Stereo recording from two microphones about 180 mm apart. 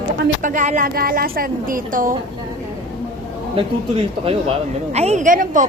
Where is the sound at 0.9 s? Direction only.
55° right (ahead or behind).